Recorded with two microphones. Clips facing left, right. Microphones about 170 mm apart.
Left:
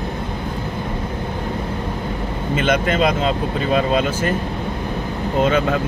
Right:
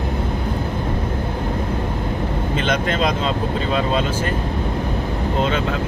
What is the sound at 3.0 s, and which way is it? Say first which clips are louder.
Speech: left 2 dB; 55° left (ahead or behind).